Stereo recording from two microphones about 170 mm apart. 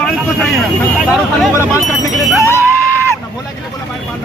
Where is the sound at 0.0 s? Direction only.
Centre (ahead or behind).